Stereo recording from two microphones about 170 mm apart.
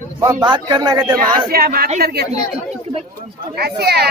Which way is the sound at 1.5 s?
60° right (ahead or behind).